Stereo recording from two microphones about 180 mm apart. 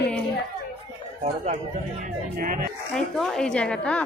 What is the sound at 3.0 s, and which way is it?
A woman's voice, centre (ahead or behind).